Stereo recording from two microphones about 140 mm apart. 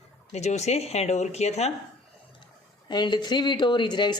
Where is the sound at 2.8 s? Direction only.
30° left (ahead or behind).